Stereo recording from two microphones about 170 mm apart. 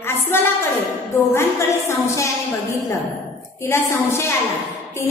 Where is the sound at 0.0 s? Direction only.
15° left (ahead or behind).